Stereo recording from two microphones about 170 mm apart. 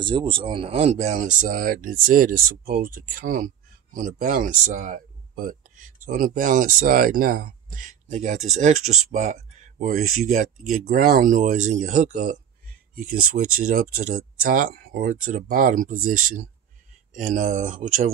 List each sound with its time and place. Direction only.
0.0 s speech: 30° right (ahead or behind); by 12.2 s 45° right (ahead or behind)
12.9 s speech: 60° right (ahead or behind)